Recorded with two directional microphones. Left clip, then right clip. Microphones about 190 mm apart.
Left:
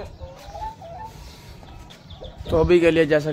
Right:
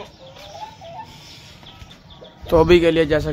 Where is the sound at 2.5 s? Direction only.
50° right (ahead or behind).